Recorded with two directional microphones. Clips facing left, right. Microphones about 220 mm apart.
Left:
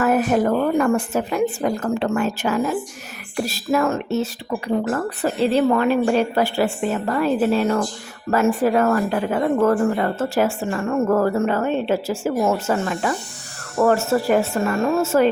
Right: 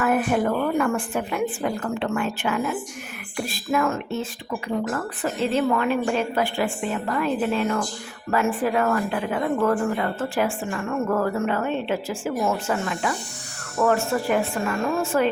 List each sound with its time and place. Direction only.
0.0 s speech: 40° left (ahead or behind)